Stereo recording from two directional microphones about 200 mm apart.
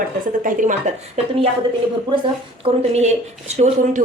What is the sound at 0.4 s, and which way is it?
A woman's voice, 40° right (ahead or behind).